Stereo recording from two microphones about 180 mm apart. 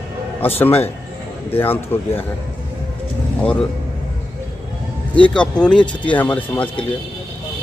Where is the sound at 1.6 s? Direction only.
10° left (ahead or behind).